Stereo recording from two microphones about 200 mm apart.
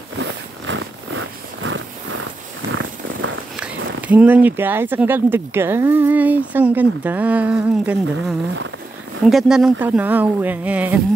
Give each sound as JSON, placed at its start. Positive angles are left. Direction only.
{"t": 0.2, "sound": "a sound", "side_deg": -70}
{"t": 2.7, "sound": "purr", "side_deg": -75}
{"t": 3.5, "sound": "speech", "side_deg": -5}